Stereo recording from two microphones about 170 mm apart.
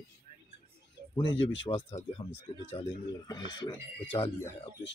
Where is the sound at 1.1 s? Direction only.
30° left (ahead or behind).